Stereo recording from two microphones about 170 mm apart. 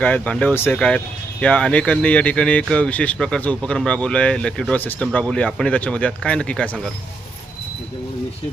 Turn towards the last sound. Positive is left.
turn(degrees=5)  # may be behind; listen again after turning